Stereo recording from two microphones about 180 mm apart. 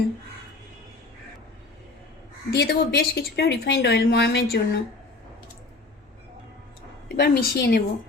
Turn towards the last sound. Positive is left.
turn(degrees=60)  # may be behind; listen again after turning